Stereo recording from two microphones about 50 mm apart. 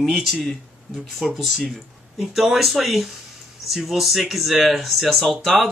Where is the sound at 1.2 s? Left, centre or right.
Centre.